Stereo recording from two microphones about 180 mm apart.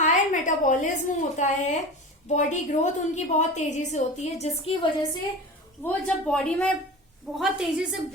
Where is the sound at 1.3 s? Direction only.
40° left (ahead or behind).